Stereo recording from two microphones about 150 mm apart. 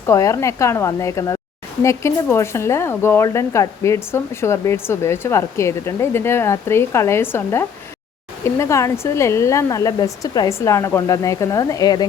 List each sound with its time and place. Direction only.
0.0 s speech: 20° left (ahead or behind)